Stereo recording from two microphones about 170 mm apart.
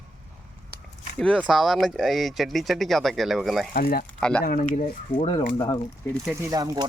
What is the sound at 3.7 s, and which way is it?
Speech, 60° left (ahead or behind).